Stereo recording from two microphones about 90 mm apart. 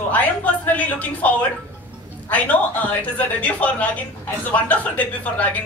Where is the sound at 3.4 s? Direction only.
15° left (ahead or behind).